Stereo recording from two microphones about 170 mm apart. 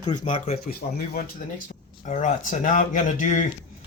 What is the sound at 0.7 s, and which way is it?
Speech, 60° left (ahead or behind).